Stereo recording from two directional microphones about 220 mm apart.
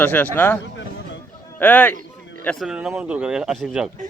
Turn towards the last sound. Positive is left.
turn(degrees=0)  # may be behind; listen again after turning